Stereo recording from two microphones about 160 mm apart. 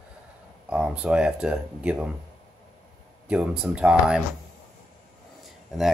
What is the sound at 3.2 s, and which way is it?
Speech, 5° right (ahead or behind).